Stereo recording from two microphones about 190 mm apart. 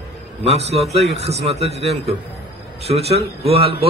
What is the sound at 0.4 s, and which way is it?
A man's voice, 35° right (ahead or behind).